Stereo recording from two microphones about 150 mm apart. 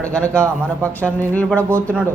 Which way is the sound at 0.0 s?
10° left (ahead or behind).